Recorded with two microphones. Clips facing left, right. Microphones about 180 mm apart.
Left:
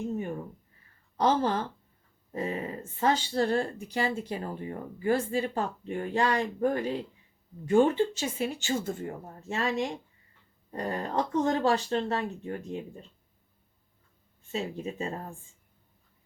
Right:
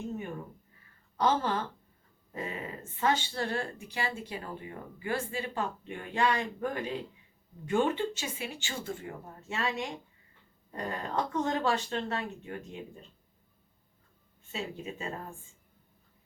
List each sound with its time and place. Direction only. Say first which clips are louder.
1.1 s speech: left 3 dB; 40° left (ahead or behind)
14.5 s speech: left 5 dB; 40° left (ahead or behind)